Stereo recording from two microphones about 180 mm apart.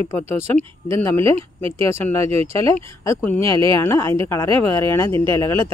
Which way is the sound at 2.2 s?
35° right (ahead or behind).